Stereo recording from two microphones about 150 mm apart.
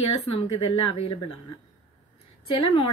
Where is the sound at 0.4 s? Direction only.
35° left (ahead or behind).